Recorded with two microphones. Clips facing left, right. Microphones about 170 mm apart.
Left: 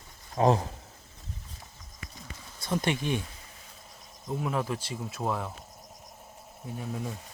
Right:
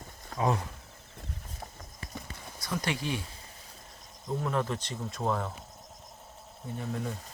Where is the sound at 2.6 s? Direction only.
25° left (ahead or behind).